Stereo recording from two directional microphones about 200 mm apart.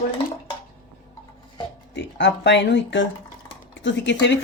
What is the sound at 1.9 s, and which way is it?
Speech, 60° left (ahead or behind).